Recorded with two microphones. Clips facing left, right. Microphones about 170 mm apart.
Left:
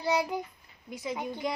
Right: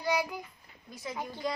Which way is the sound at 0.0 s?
25° left (ahead or behind).